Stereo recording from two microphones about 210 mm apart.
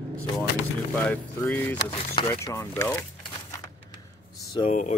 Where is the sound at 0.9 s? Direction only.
10° left (ahead or behind).